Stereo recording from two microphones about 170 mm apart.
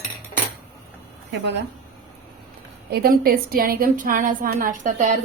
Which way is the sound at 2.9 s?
60° right (ahead or behind).